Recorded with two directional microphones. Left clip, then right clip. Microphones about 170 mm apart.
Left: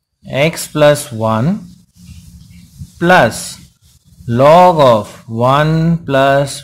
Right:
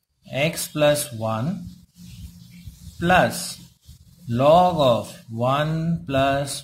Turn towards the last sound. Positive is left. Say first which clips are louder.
# left 10 dB
turn(degrees=30)  # may be behind; listen again after turning